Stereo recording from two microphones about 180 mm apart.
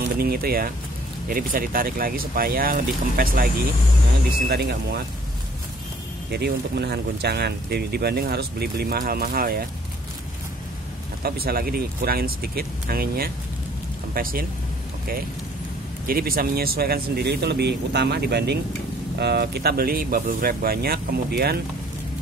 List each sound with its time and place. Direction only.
0.2 s speech: 55° right (ahead or behind)
4.5 s speech: 65° right (ahead or behind)
6.3 s speech: 65° right (ahead or behind)
11.2 s speech: 55° right (ahead or behind)
16.1 s speech: 55° right (ahead or behind)